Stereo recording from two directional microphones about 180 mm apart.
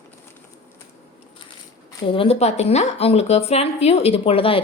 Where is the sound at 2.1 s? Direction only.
30° left (ahead or behind).